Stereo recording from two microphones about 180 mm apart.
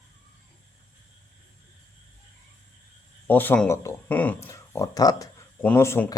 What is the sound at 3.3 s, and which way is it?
Speech, 10° left (ahead or behind).